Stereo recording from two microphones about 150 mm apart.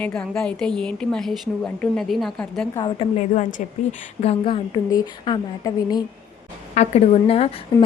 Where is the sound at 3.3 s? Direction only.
60° left (ahead or behind).